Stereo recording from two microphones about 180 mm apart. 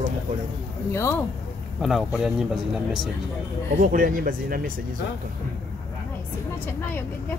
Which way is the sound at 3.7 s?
50° right (ahead or behind).